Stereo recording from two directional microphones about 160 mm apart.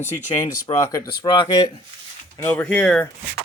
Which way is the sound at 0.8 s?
20° left (ahead or behind).